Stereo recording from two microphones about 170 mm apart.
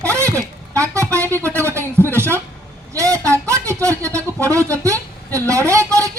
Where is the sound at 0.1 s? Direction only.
15° right (ahead or behind).